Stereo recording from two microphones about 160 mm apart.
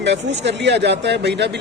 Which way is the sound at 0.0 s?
90° right.